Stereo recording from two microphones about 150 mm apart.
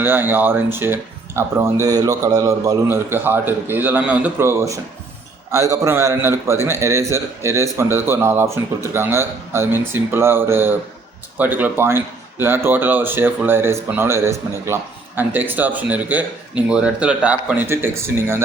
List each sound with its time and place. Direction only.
0.0 s speech: 15° right (ahead or behind)